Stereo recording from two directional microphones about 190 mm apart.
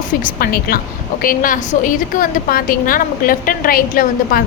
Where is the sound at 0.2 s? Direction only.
50° left (ahead or behind).